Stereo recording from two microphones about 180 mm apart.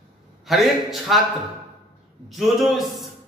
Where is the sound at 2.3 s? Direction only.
Centre (ahead or behind).